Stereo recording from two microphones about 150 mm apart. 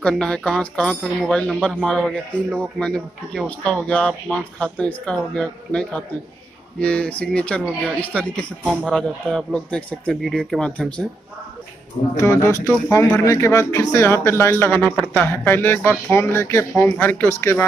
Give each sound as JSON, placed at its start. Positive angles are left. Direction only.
{"t": 0.0, "sound": "speech", "side_deg": 5}
{"t": 12.2, "sound": "speech", "side_deg": 20}